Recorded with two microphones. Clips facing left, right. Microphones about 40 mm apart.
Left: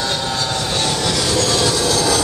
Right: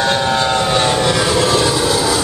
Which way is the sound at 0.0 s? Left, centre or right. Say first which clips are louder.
Right 6 dB; right.